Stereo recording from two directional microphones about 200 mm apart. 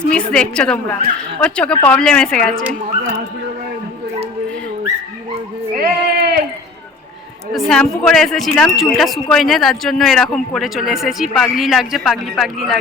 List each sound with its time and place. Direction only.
0.1 s speech: 5° left (ahead or behind)
5.7 s sheep: 50° right (ahead or behind)
7.5 s speech: centre (ahead or behind)